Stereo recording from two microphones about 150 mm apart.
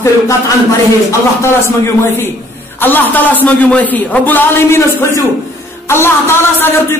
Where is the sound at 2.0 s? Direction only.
15° left (ahead or behind).